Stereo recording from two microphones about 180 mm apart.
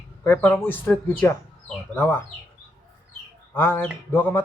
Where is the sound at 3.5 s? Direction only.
10° left (ahead or behind).